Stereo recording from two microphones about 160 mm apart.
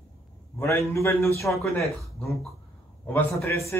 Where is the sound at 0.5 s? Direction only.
15° left (ahead or behind).